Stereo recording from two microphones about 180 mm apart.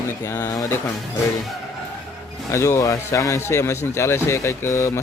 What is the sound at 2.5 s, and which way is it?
Speech, 15° left (ahead or behind).